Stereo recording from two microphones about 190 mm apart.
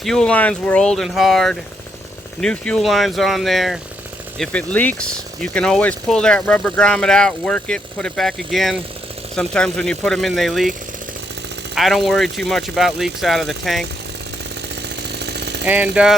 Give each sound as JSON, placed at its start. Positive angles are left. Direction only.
{"t": 0.0, "sound": "speech", "side_deg": 5}
{"t": 14.8, "sound": "a sound", "side_deg": -60}
{"t": 15.6, "sound": "speech", "side_deg": -10}